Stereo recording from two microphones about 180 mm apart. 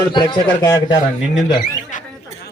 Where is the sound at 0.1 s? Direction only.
25° left (ahead or behind).